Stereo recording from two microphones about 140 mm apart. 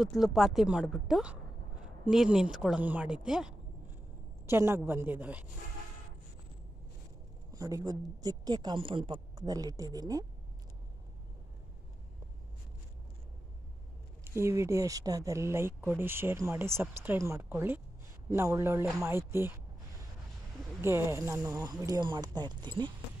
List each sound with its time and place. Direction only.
0.0 s speech: centre (ahead or behind)
4.5 s a woman's voice: 20° right (ahead or behind)
7.5 s speech: 25° right (ahead or behind)
14.2 s a woman's voice: 20° right (ahead or behind)
20.8 s speech: 20° right (ahead or behind); by 22.9 s 35° right (ahead or behind)